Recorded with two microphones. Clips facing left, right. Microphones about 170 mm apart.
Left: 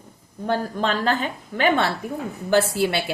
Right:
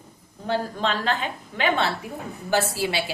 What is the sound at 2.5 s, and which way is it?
Speech, 60° left (ahead or behind).